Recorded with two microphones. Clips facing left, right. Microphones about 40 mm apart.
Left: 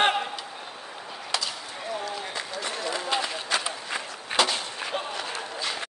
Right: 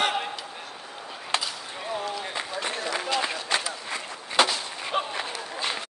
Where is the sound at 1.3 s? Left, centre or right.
Right.